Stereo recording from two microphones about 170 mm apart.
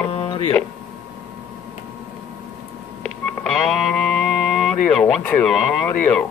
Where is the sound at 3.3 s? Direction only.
5° left (ahead or behind).